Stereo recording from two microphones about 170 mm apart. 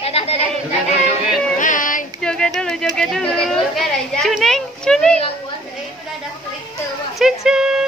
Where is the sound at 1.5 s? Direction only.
50° left (ahead or behind).